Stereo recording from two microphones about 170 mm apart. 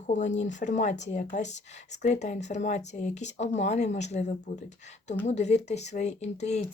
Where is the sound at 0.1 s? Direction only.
45° left (ahead or behind).